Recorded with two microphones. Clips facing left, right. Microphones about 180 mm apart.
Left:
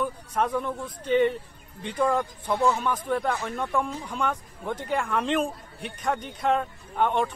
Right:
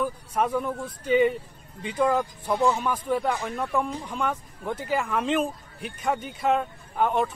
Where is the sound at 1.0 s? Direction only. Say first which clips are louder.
Right 1 dB; 5° right (ahead or behind).